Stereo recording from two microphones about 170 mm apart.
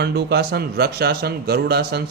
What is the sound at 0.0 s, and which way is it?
A man's voice, 70° right (ahead or behind).